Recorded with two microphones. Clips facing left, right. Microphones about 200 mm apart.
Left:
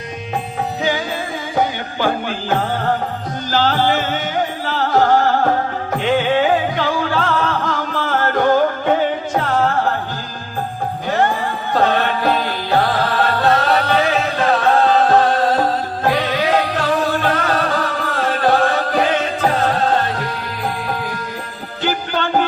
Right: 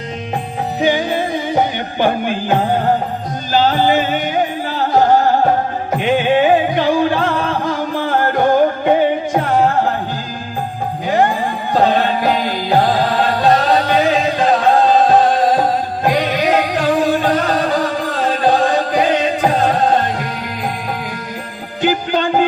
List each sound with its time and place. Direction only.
0.8 s music: 20° right (ahead or behind)
11.1 s music: 15° right (ahead or behind)
21.8 s music: 15° right (ahead or behind)